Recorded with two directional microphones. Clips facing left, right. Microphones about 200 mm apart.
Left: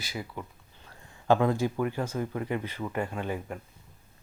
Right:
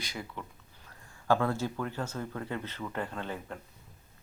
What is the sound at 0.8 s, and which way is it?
Speech, 20° left (ahead or behind).